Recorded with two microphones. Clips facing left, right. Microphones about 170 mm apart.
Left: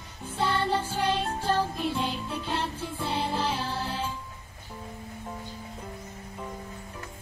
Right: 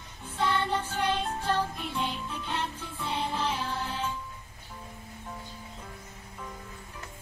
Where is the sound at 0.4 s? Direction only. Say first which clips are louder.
Left 2 dB; 30° left (ahead or behind).